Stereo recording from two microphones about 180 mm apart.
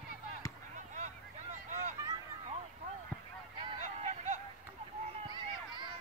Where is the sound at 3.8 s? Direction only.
40° right (ahead or behind).